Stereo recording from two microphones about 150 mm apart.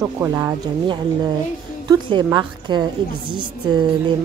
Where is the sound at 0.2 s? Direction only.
20° right (ahead or behind).